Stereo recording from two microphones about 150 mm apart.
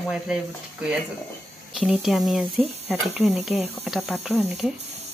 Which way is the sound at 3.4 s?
Centre (ahead or behind).